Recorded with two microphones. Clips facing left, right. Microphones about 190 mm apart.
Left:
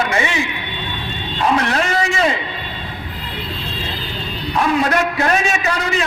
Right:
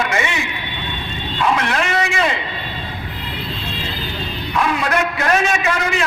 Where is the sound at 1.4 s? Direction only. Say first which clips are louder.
Left 1 dB; 35° left (ahead or behind).